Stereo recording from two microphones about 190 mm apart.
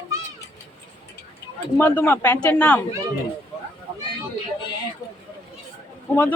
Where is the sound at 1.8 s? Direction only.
10° left (ahead or behind).